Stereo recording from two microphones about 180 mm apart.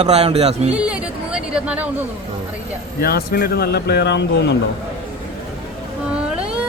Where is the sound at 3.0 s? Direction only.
60° left (ahead or behind).